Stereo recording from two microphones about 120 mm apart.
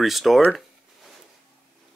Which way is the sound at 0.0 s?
Centre (ahead or behind).